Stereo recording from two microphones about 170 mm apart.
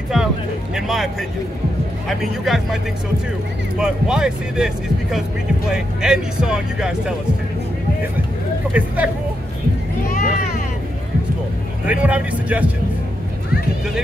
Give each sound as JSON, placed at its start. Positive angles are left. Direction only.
{"t": 0.7, "sound": "speech", "side_deg": 0}
{"t": 3.8, "sound": "speech", "side_deg": -5}
{"t": 5.7, "sound": "speech", "side_deg": -5}
{"t": 8.7, "sound": "speech", "side_deg": -10}
{"t": 10.0, "sound": "vehicle", "side_deg": 50}
{"t": 11.8, "sound": "speech", "side_deg": -10}